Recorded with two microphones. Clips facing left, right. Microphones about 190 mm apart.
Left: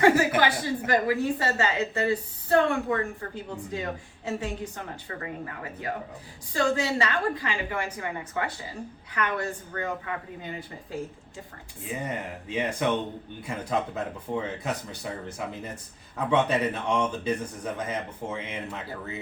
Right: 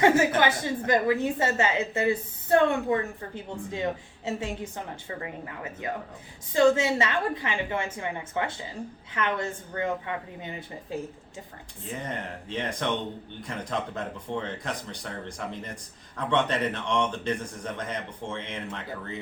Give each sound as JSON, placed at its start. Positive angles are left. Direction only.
{"t": 0.0, "sound": "a woman's voice", "side_deg": -25}
{"t": 6.5, "sound": "a woman's voice", "side_deg": -20}
{"t": 11.9, "sound": "speech", "side_deg": 10}